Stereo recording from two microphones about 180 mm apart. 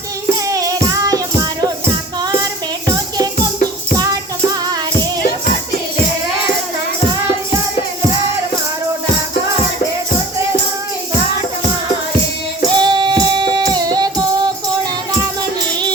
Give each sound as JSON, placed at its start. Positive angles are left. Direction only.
{"t": 0.4, "sound": "music", "side_deg": -20}
{"t": 3.9, "sound": "music", "side_deg": -20}
{"t": 12.7, "sound": "music", "side_deg": -25}